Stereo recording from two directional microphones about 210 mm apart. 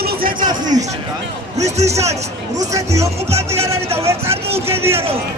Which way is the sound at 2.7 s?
15° right (ahead or behind).